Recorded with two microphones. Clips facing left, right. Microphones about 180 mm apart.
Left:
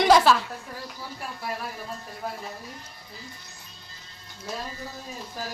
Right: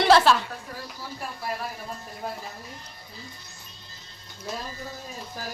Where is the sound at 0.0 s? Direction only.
5° left (ahead or behind).